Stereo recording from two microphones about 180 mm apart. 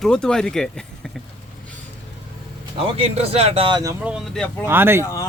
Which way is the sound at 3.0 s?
35° right (ahead or behind).